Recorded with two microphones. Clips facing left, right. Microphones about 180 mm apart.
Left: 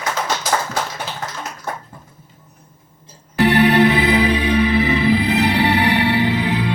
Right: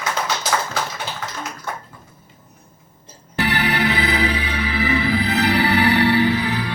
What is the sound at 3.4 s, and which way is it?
Music, 25° left (ahead or behind).